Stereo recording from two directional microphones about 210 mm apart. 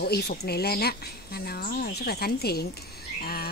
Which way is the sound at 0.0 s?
50° left (ahead or behind).